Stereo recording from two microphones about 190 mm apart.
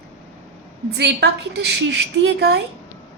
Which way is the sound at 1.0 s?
60° right (ahead or behind).